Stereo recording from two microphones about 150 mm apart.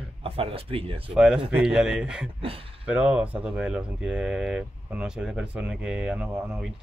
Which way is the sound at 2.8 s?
10° right (ahead or behind).